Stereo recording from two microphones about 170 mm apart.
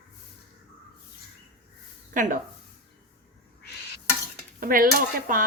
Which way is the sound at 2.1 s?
50° right (ahead or behind).